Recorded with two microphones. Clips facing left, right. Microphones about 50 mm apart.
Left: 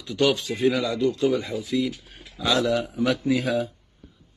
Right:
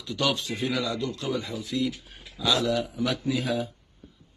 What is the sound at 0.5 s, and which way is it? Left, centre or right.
Speech, left.